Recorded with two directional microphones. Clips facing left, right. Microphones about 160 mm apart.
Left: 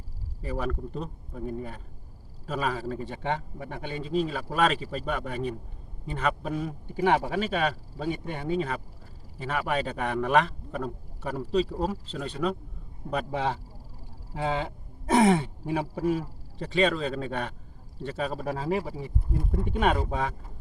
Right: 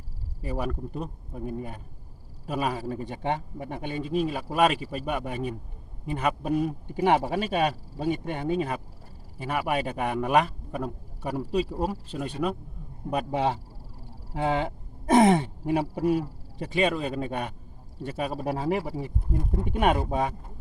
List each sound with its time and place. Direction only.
0.4 s a man's voice: 10° right (ahead or behind)
15.0 s a man's voice: 15° right (ahead or behind)